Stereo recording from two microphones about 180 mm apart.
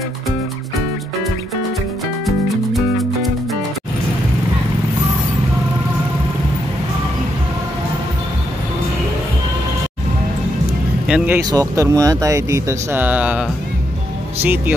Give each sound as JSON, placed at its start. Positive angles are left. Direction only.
{"t": 2.2, "sound": "music", "side_deg": 0}
{"t": 11.1, "sound": "speech", "side_deg": -5}